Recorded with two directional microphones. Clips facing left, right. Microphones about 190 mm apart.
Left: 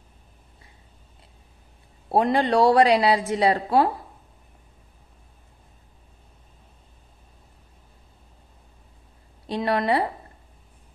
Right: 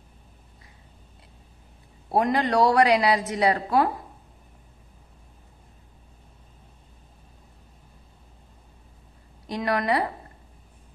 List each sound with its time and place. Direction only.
2.0 s a woman's voice: 30° left (ahead or behind)
9.5 s a woman's voice: 30° left (ahead or behind)